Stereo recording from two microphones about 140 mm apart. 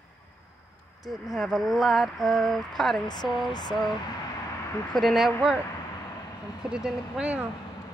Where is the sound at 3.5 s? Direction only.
30° left (ahead or behind).